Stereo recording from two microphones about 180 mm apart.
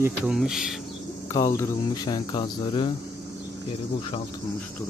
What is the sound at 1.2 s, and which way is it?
Speech, 15° left (ahead or behind).